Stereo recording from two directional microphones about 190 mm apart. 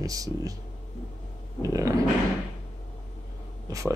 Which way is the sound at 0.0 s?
20° right (ahead or behind).